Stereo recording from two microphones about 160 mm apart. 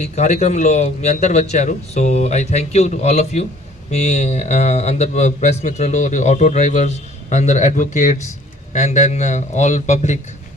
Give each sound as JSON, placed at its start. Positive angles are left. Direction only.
{"t": 0.0, "sound": "speech", "side_deg": 45}